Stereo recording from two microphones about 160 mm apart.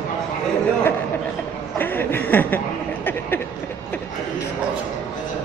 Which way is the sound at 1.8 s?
15° left (ahead or behind).